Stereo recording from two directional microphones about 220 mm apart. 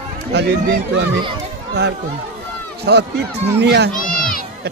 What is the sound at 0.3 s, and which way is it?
Speech, 50° right (ahead or behind).